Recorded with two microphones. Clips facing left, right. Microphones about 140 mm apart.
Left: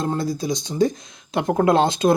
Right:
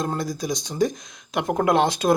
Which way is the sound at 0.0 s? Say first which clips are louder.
Left 3 dB; 30° left (ahead or behind).